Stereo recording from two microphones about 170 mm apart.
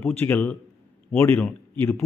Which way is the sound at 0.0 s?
10° left (ahead or behind).